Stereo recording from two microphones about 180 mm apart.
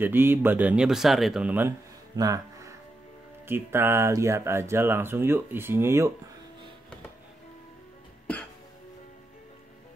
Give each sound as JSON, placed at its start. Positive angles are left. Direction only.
{"t": 0.0, "sound": "speech", "side_deg": -10}
{"t": 2.1, "sound": "a sound", "side_deg": -20}
{"t": 3.4, "sound": "speech", "side_deg": -10}